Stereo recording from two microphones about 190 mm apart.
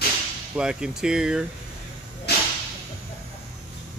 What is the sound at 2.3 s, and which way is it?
Whip, 60° left (ahead or behind).